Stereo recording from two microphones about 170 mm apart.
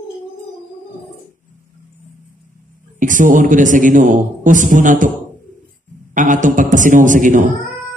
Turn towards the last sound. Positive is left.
turn(degrees=-50)  # may be behind; listen again after turning